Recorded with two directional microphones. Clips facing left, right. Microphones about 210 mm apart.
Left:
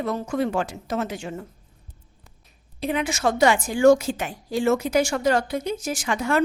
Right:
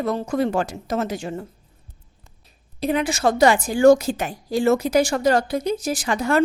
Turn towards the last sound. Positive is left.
turn(degrees=-35)  # may be behind; listen again after turning